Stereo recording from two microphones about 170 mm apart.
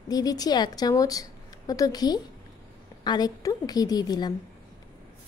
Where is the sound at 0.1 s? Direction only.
20° left (ahead or behind).